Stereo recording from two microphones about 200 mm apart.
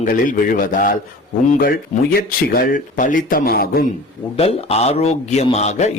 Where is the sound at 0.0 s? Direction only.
40° left (ahead or behind).